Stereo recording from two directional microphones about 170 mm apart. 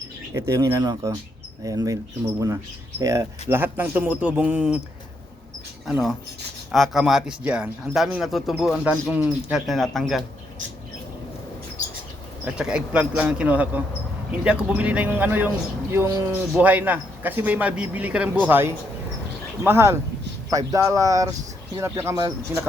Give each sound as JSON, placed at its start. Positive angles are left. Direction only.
{"t": 0.4, "sound": "speech", "side_deg": -15}
{"t": 5.8, "sound": "speech", "side_deg": 0}
{"t": 12.5, "sound": "speech", "side_deg": -5}